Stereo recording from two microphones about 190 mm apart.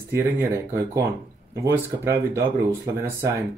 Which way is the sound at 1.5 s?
15° right (ahead or behind).